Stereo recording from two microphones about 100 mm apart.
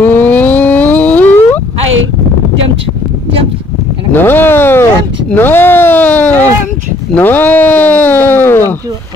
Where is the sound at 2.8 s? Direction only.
70° right (ahead or behind).